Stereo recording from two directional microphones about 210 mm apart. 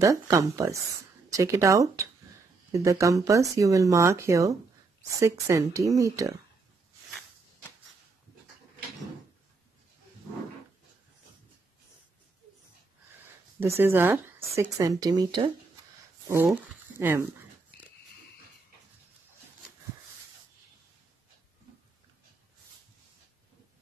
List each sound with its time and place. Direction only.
0.0 s speech: 15° right (ahead or behind)
13.6 s speech: 10° right (ahead or behind)
17.0 s speech: 10° right (ahead or behind)